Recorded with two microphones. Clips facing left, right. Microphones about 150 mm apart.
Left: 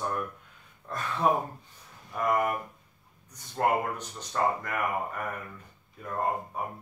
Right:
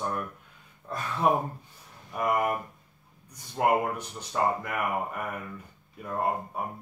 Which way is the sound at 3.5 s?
10° right (ahead or behind).